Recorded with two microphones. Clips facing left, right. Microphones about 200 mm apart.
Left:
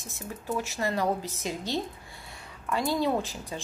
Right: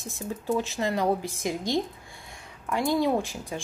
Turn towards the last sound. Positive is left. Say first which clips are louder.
# right 2 dB
turn(degrees=-15)  # may be behind; listen again after turning